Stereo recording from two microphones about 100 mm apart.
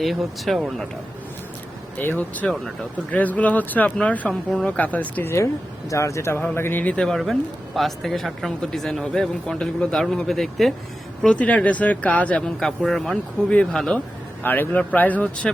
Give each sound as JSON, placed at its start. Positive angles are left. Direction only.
{"t": 0.0, "sound": "speech", "side_deg": 0}
{"t": 2.0, "sound": "speech", "side_deg": 20}
{"t": 12.5, "sound": "speech", "side_deg": 5}
{"t": 14.4, "sound": "speech", "side_deg": 20}